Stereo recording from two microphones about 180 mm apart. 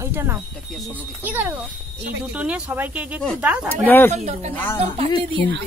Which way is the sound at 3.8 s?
10° left (ahead or behind).